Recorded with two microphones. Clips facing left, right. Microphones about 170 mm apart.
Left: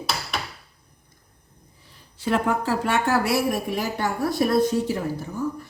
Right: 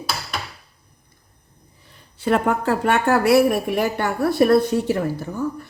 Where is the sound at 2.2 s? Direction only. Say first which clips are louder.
Right 4 dB; 60° right (ahead or behind).